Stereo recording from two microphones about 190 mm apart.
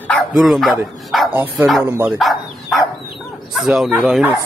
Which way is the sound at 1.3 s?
10° right (ahead or behind).